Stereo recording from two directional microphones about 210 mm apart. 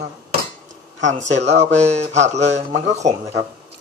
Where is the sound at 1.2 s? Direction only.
30° right (ahead or behind).